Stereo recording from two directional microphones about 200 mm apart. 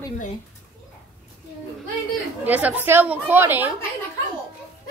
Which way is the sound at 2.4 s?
10° right (ahead or behind).